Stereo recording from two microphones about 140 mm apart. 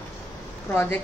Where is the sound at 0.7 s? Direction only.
15° left (ahead or behind).